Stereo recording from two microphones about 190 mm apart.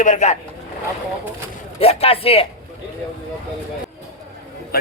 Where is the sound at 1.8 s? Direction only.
30° left (ahead or behind).